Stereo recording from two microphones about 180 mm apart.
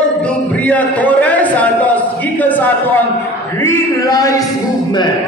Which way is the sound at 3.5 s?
15° left (ahead or behind).